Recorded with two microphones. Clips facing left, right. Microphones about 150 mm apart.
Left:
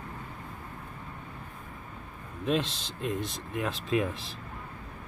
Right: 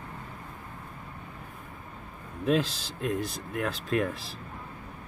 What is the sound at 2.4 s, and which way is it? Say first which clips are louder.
Speech: right 3 dB; centre (ahead or behind).